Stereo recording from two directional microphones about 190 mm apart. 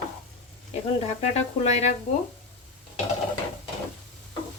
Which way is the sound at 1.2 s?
35° left (ahead or behind).